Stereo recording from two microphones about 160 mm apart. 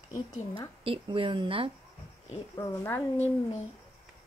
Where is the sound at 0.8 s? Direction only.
35° right (ahead or behind).